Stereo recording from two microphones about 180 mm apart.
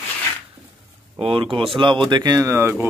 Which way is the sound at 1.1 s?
30° right (ahead or behind).